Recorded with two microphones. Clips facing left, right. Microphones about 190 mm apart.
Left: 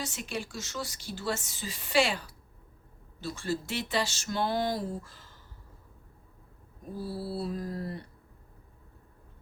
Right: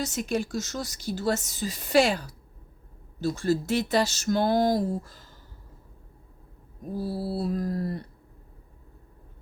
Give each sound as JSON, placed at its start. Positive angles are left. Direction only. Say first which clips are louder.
{"t": 0.0, "sound": "speech", "louder": "right 8 dB", "side_deg": -40}
{"t": 6.9, "sound": "speech", "louder": "right 5 dB", "side_deg": -40}